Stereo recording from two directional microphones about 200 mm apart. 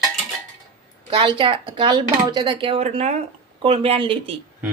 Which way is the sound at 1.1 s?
25° right (ahead or behind).